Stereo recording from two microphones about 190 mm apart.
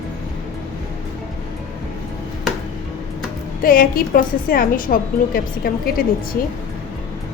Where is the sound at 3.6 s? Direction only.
50° left (ahead or behind).